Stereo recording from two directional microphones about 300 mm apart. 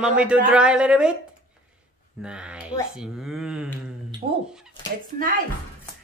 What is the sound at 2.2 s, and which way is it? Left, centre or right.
Speech, centre.